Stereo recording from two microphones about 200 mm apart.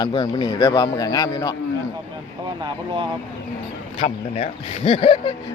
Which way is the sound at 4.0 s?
30° left (ahead or behind).